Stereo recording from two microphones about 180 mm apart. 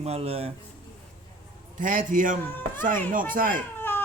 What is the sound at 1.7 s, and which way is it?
A man's voice, 50° right (ahead or behind).